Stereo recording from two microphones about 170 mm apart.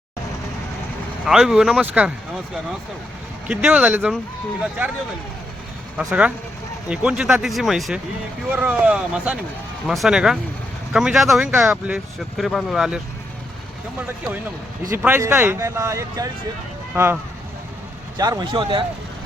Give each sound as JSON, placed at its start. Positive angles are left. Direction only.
{"t": 1.2, "sound": "speech", "side_deg": 0}
{"t": 3.5, "sound": "speech", "side_deg": -5}
{"t": 6.1, "sound": "speech", "side_deg": -10}
{"t": 14.8, "sound": "speech", "side_deg": -15}
{"t": 18.2, "sound": "speech", "side_deg": -25}